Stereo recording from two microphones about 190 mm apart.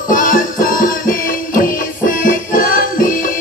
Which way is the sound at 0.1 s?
45° left (ahead or behind).